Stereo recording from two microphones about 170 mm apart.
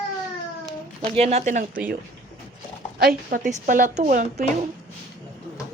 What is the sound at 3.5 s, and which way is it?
Speech, 50° right (ahead or behind).